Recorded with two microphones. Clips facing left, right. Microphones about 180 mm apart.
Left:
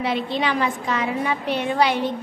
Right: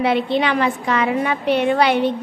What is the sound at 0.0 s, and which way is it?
A woman's voice, 65° right (ahead or behind).